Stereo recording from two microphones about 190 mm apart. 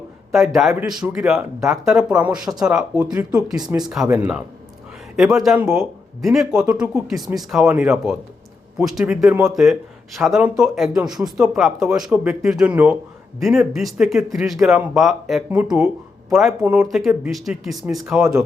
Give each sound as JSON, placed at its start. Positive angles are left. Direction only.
{"t": 0.3, "sound": "speech", "side_deg": 0}
{"t": 3.5, "sound": "speech", "side_deg": -20}
{"t": 3.9, "sound": "speech", "side_deg": -5}
{"t": 16.6, "sound": "speech", "side_deg": -10}